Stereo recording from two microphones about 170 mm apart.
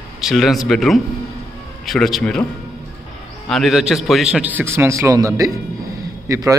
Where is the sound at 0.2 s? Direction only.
Centre (ahead or behind).